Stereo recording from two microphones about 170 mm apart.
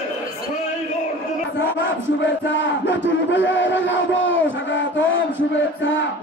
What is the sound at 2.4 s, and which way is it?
Battle cry, 90° left.